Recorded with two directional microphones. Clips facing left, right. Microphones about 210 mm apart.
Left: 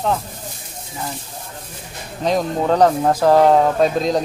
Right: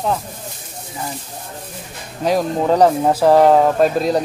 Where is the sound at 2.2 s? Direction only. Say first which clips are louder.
Right 2 dB; 5° right (ahead or behind).